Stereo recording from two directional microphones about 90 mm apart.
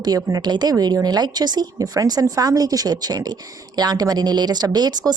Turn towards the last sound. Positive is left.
turn(degrees=-50)  # may be behind; listen again after turning